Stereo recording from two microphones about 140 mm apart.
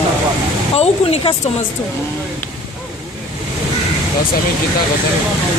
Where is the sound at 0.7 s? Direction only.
45° left (ahead or behind).